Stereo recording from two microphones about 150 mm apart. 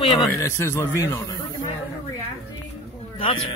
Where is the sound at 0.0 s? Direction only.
30° left (ahead or behind).